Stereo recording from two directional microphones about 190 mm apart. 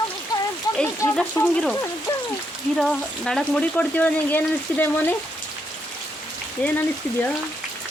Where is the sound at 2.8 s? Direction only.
5° left (ahead or behind).